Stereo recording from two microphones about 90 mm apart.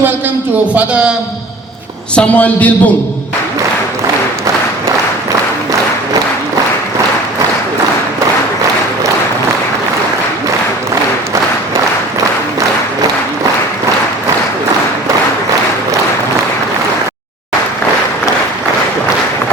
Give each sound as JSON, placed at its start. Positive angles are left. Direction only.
{"t": 0.7, "sound": "a man's voice", "side_deg": -15}
{"t": 2.1, "sound": "a man's voice", "side_deg": 15}